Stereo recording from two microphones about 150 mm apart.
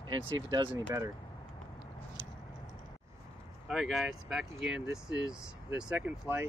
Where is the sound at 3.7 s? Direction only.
Centre (ahead or behind).